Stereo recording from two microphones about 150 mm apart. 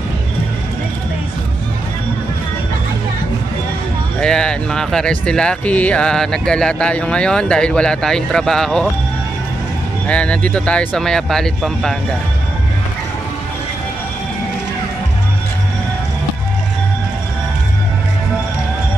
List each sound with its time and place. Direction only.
4.2 s speech: 5° left (ahead or behind)
10.0 s speech: 5° left (ahead or behind)